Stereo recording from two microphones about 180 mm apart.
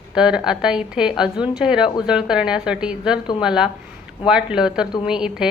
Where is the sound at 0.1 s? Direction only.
5° right (ahead or behind).